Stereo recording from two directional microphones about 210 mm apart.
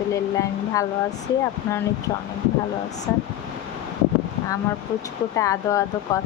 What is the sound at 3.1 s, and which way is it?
Speech, 10° left (ahead or behind).